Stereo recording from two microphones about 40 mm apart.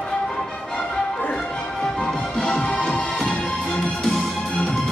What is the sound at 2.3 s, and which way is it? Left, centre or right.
Music, centre.